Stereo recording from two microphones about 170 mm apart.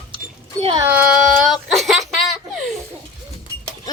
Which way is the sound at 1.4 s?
Centre (ahead or behind).